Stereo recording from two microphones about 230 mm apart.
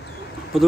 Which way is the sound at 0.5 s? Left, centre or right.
Centre.